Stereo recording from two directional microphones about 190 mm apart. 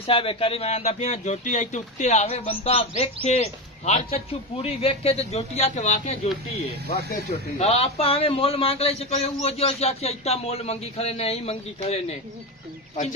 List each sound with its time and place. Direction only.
0.0 s a man's voice: 30° left (ahead or behind)
6.9 s speech: 55° left (ahead or behind)
7.5 s a man's voice: 35° left (ahead or behind)